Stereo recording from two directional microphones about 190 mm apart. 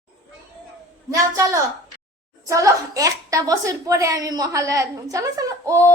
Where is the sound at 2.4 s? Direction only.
15° right (ahead or behind).